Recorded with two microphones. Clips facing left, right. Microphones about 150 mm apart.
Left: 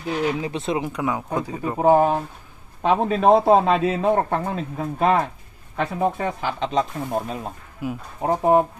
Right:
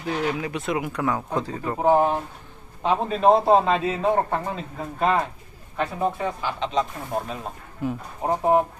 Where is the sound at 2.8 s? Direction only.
55° left (ahead or behind).